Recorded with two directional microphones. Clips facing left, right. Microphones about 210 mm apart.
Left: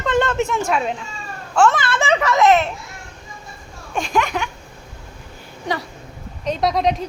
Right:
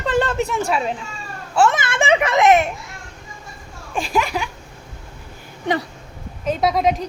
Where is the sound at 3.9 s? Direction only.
Centre (ahead or behind).